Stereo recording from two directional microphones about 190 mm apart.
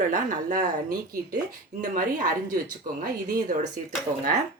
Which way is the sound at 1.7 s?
35° right (ahead or behind).